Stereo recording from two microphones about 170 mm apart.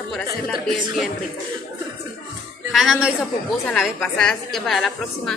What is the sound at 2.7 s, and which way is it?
Speech, 5° right (ahead or behind).